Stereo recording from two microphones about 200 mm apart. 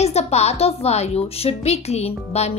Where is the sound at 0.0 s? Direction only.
30° left (ahead or behind).